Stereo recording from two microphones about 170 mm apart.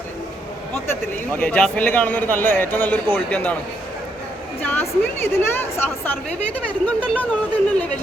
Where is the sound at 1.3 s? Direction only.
10° left (ahead or behind).